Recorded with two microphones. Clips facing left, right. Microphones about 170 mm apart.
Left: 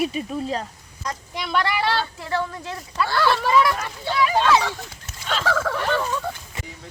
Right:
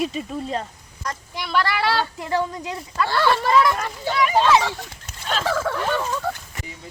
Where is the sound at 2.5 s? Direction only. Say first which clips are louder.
Right 3 dB; 15° right (ahead or behind).